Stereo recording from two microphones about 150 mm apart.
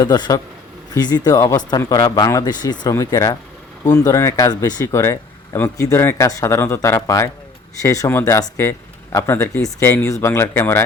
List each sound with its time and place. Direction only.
0.0 s speech: 25° left (ahead or behind)